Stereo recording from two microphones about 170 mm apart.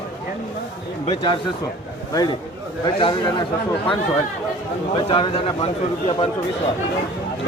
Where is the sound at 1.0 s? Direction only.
30° left (ahead or behind).